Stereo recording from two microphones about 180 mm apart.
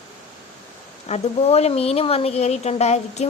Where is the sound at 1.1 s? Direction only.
35° left (ahead or behind).